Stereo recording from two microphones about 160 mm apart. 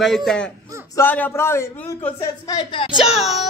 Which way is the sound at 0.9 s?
10° left (ahead or behind).